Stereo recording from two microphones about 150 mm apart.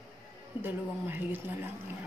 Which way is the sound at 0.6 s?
15° right (ahead or behind).